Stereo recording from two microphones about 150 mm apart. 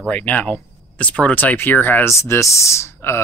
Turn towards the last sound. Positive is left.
turn(degrees=15)  # may be behind; listen again after turning